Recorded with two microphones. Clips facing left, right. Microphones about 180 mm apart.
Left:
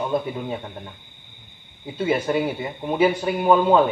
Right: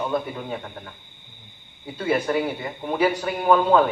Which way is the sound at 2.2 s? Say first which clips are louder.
Left 1 dB; 20° left (ahead or behind).